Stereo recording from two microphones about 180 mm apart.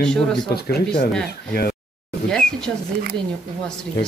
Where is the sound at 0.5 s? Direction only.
60° left (ahead or behind).